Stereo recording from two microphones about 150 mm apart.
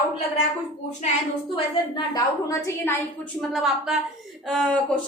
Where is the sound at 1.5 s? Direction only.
25° left (ahead or behind).